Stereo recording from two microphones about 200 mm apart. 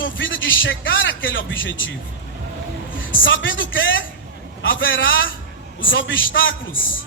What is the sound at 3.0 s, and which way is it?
A woman's voice, 70° left (ahead or behind).